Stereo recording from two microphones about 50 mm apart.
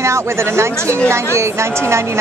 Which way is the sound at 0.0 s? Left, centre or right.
Right.